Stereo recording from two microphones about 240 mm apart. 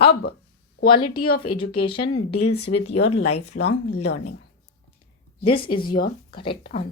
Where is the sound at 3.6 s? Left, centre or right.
Left.